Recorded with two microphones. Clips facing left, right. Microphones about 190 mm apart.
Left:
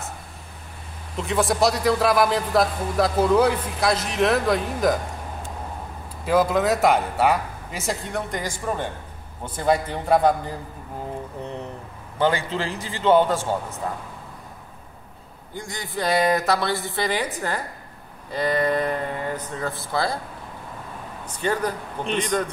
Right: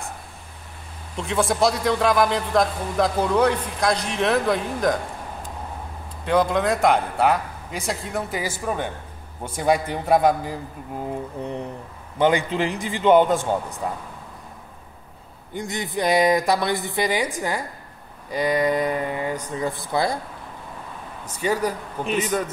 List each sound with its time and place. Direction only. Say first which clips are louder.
1.1 s a man's voice: even; centre (ahead or behind)
6.2 s a man's voice: even; 5° left (ahead or behind)
12.2 s speech: right 3 dB; 15° right (ahead or behind)
15.5 s speech: right 4 dB; 20° right (ahead or behind)
21.4 s speech: right 1 dB; 10° right (ahead or behind)